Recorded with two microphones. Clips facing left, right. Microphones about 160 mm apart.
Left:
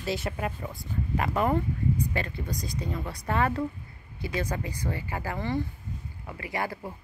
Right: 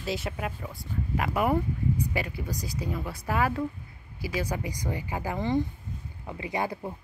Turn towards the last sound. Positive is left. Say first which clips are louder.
# right 2 dB
turn(degrees=-20)  # may be behind; listen again after turning